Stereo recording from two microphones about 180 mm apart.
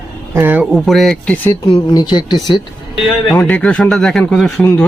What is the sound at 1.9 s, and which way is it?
Speech, 25° left (ahead or behind).